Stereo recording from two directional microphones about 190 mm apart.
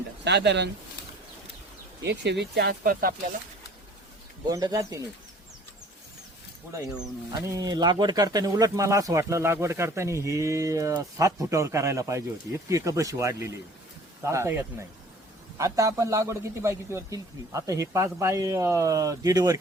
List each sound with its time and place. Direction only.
0.3 s speech: 65° right (ahead or behind)
2.0 s speech: 65° right (ahead or behind); by 3.2 s 45° right (ahead or behind)
4.4 s speech: 20° right (ahead or behind)
7.3 s speech: 20° right (ahead or behind)